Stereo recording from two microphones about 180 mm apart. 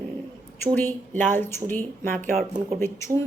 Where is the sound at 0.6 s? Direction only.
10° left (ahead or behind).